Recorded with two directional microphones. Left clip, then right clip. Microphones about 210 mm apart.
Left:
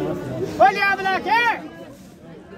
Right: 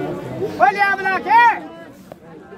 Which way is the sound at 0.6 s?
Centre (ahead or behind).